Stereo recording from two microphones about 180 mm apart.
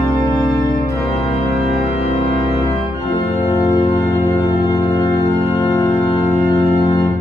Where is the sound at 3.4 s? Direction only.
25° left (ahead or behind).